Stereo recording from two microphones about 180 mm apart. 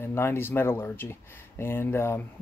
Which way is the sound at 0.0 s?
15° left (ahead or behind).